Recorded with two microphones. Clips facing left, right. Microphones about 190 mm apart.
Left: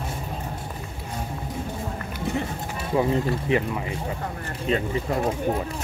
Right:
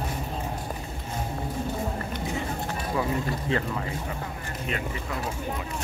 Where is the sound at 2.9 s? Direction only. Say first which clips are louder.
Left 7 dB; 25° left (ahead or behind).